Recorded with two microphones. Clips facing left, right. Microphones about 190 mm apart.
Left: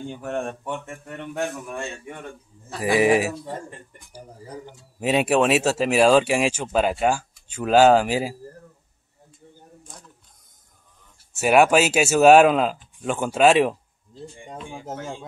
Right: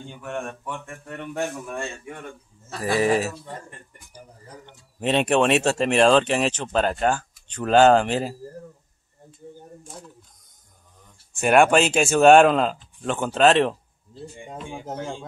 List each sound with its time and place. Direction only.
0.2 s speech: 35° left (ahead or behind)
2.6 s speech: 15° left (ahead or behind)
11.3 s speech: 5° left (ahead or behind)